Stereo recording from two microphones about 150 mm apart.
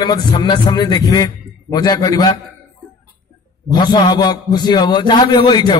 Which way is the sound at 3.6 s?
30° left (ahead or behind).